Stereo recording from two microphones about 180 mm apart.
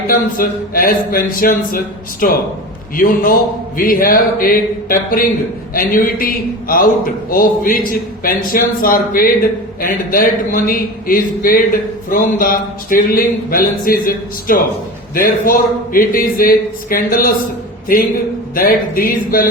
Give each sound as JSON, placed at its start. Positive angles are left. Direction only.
{"t": 0.1, "sound": "a man's voice", "side_deg": 50}
{"t": 15.1, "sound": "a man's voice", "side_deg": 50}
{"t": 18.5, "sound": "a man's voice", "side_deg": 55}